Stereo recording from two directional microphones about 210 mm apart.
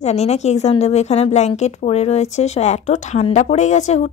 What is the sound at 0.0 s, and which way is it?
A woman's voice, 30° left (ahead or behind).